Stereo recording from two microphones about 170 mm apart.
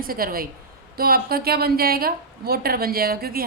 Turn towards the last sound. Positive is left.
turn(degrees=-60)  # may be behind; listen again after turning